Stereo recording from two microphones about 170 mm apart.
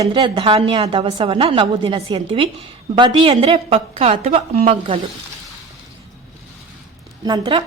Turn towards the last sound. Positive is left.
turn(degrees=-25)  # may be behind; listen again after turning